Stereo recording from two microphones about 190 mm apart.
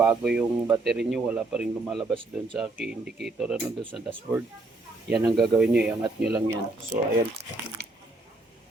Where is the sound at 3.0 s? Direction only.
60° right (ahead or behind).